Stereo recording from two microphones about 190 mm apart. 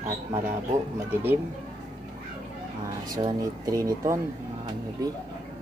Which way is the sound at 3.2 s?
20° right (ahead or behind).